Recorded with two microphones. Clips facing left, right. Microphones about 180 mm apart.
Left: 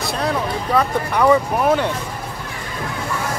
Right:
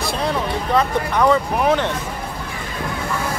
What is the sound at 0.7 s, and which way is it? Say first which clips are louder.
Speech: even; 5° left (ahead or behind).